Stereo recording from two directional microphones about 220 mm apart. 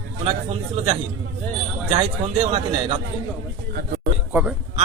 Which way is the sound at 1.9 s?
25° right (ahead or behind).